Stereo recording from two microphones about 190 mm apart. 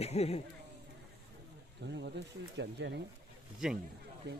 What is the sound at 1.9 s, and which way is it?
Speech, 65° right (ahead or behind).